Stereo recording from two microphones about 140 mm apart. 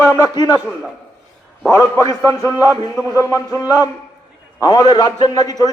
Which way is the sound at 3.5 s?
25° left (ahead or behind).